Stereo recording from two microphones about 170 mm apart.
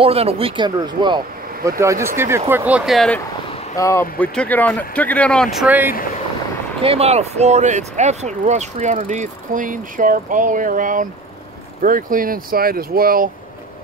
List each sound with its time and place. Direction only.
0.0 s speech: 35° right (ahead or behind); by 3.2 s centre (ahead or behind)
3.7 s speech: 20° left (ahead or behind); by 5.9 s 10° right (ahead or behind)
6.8 s speech: 35° right (ahead or behind); by 13.3 s 60° right (ahead or behind)